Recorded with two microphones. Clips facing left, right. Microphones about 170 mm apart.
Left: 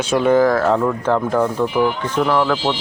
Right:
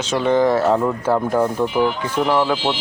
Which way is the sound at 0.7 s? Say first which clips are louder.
Left 1 dB; 10° right (ahead or behind).